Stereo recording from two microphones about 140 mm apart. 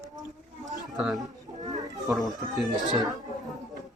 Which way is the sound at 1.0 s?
Centre (ahead or behind).